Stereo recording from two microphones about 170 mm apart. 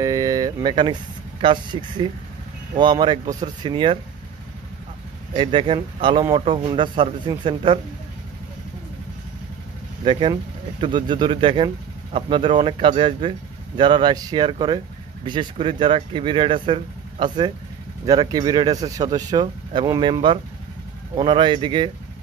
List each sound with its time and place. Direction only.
0.0 s a sound: 20° right (ahead or behind)
1.4 s speech: 30° right (ahead or behind)
5.3 s speech: 30° right (ahead or behind)
10.0 s speech: 30° right (ahead or behind)